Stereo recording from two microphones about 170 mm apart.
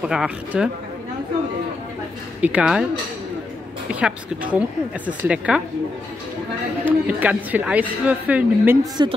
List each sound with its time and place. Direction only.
0.0 s speech: 5° right (ahead or behind)
2.4 s speech: 5° right (ahead or behind)
3.9 s a woman's voice: 5° right (ahead or behind)
6.8 s a woman's voice: 10° right (ahead or behind)
9.0 s speech: 25° right (ahead or behind)